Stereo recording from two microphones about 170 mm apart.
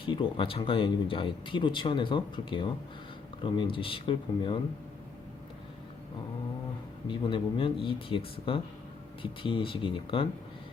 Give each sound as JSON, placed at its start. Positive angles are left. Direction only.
{"t": 0.0, "sound": "speech", "side_deg": 30}
{"t": 7.1, "sound": "speech", "side_deg": 30}